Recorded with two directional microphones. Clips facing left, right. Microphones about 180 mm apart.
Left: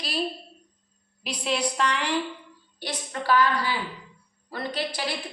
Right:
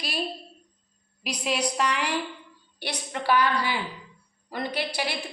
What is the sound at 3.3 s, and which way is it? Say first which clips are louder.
A woman's voice: left 1 dB; 15° right (ahead or behind).